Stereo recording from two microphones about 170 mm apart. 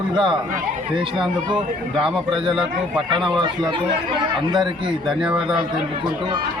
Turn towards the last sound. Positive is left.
turn(degrees=-5)  # may be behind; listen again after turning